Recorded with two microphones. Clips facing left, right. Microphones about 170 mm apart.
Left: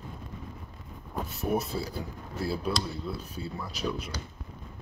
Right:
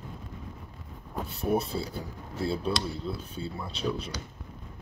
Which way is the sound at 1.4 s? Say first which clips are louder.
Right 2 dB; 30° right (ahead or behind).